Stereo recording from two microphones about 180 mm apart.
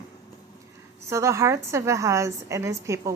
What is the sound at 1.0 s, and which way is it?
A woman's voice, 15° right (ahead or behind).